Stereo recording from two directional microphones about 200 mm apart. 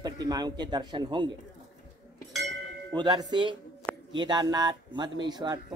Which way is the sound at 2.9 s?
20° right (ahead or behind).